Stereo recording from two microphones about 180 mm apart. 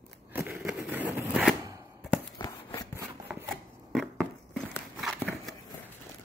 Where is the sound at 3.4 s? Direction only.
Centre (ahead or behind).